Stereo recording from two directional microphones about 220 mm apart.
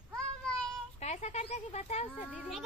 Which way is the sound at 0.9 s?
30° left (ahead or behind).